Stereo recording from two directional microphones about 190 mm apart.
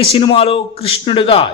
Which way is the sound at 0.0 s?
30° left (ahead or behind).